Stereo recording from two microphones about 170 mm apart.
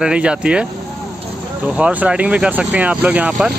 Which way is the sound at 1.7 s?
10° right (ahead or behind).